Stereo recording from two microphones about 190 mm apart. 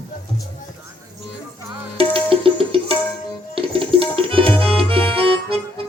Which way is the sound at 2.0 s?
30° right (ahead or behind).